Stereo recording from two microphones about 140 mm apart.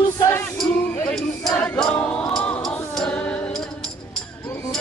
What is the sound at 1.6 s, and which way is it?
Music, 10° left (ahead or behind).